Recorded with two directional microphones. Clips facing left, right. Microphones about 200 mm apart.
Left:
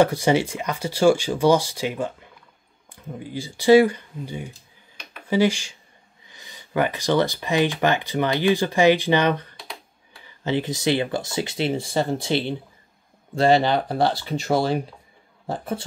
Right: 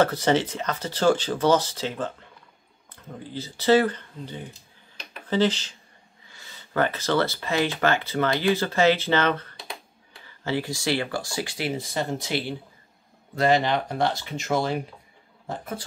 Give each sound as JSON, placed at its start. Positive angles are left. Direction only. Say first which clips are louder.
{"t": 0.0, "sound": "speech", "louder": "left 3 dB", "side_deg": 10}
{"t": 3.3, "sound": "speech", "louder": "left 5 dB", "side_deg": 10}